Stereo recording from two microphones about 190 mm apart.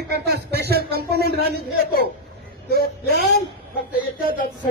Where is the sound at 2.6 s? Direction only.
55° left (ahead or behind).